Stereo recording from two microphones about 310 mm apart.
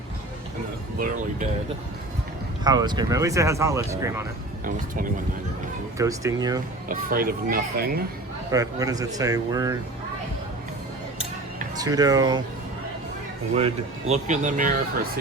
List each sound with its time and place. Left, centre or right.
0.9 s speech: right
2.6 s speech: centre
6.0 s speech: centre
6.8 s speech: right
8.5 s speech: centre
11.8 s speech: centre
13.6 s speech: centre